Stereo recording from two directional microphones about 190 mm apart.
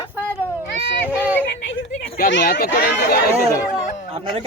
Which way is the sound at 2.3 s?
65° left (ahead or behind).